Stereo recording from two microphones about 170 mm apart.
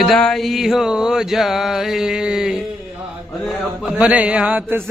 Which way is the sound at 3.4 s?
5° right (ahead or behind).